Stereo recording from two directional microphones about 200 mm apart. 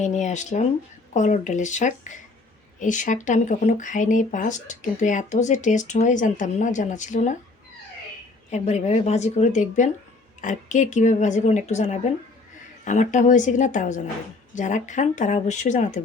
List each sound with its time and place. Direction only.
0.0 s speech: 35° left (ahead or behind)
8.4 s speech: 35° left (ahead or behind)